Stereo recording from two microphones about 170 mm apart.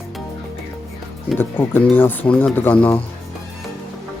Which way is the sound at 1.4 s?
10° left (ahead or behind).